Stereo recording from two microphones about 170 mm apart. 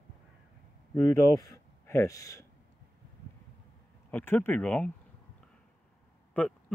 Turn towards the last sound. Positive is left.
turn(degrees=10)  # may be behind; listen again after turning